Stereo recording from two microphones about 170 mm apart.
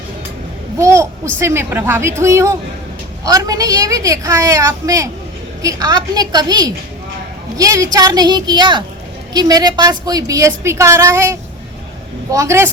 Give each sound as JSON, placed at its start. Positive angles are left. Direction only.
{"t": 0.8, "sound": "a woman's voice", "side_deg": -15}